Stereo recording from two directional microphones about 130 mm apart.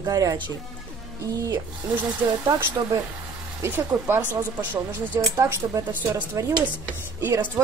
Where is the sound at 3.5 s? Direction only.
15° right (ahead or behind).